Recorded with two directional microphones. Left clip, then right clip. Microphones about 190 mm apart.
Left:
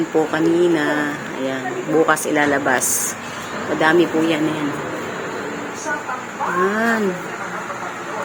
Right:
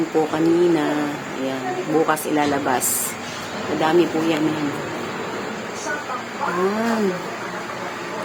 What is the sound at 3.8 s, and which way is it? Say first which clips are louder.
Speech: left 3 dB; 5° left (ahead or behind).